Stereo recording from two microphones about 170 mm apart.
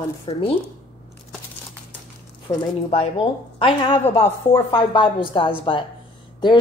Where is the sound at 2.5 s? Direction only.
20° left (ahead or behind).